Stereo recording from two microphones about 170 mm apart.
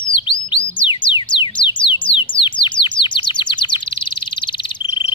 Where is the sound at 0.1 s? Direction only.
30° left (ahead or behind).